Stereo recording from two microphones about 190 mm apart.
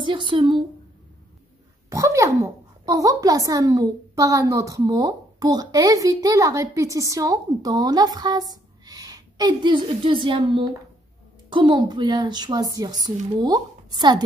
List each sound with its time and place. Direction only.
0.0 s a woman's voice: 25° right (ahead or behind)
1.9 s a child's voice: 15° right (ahead or behind)